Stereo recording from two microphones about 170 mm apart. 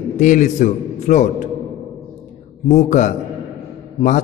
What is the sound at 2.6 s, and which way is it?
Speech, 45° left (ahead or behind).